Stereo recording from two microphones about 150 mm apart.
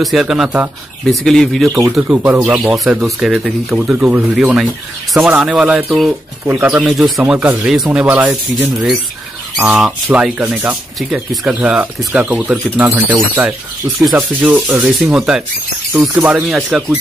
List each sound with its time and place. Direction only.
0.0 s speech: centre (ahead or behind)
6.5 s speech: 15° right (ahead or behind)
6.8 s speech: centre (ahead or behind)
9.6 s speech: 5° right (ahead or behind)
14.1 s speech: 10° right (ahead or behind)
15.9 s speech: 20° right (ahead or behind)
16.2 s speech: 5° right (ahead or behind)